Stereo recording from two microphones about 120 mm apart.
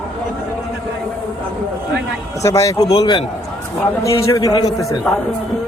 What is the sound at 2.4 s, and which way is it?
Speech, 25° left (ahead or behind).